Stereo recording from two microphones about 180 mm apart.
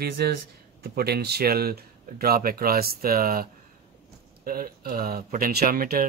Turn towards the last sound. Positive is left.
turn(degrees=-50)  # may be behind; listen again after turning